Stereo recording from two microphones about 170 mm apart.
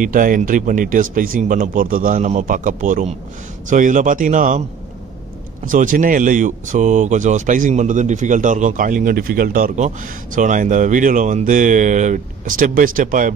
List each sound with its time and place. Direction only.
0.0 s speech: 50° right (ahead or behind)
5.7 s speech: 50° right (ahead or behind)